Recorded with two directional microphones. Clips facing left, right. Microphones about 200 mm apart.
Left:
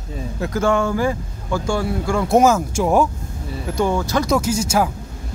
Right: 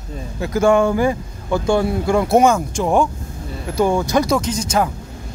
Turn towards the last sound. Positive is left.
turn(degrees=5)  # may be behind; listen again after turning